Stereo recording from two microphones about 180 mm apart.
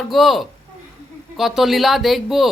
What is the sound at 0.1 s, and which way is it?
Speech, centre (ahead or behind).